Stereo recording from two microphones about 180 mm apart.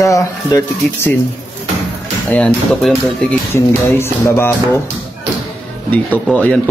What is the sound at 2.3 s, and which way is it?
Speech, 5° left (ahead or behind).